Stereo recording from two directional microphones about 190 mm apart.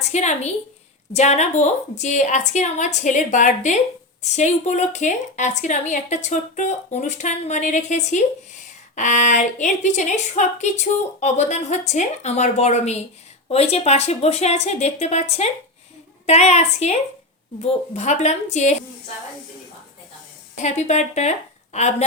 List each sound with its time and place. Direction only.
0.1 s a woman's voice: 35° left (ahead or behind)
20.6 s a woman's voice: 35° left (ahead or behind)